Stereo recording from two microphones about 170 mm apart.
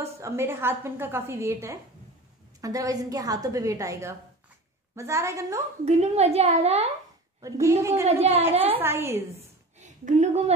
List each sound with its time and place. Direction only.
0.0 s a woman's voice: 15° right (ahead or behind)
5.9 s a woman's voice: 40° right (ahead or behind)
7.4 s a woman's voice: 15° right (ahead or behind)
8.1 s a woman's voice: 35° right (ahead or behind)
8.7 s a woman's voice: 15° right (ahead or behind)
9.8 s speech: 45° right (ahead or behind)